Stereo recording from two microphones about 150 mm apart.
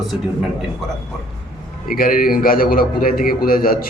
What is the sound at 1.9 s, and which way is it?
A man's voice, 75° left (ahead or behind).